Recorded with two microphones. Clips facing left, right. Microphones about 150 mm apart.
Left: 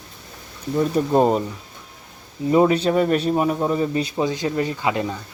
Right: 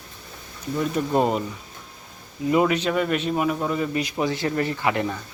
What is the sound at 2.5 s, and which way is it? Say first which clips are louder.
A man's voice: left 4 dB; 30° left (ahead or behind).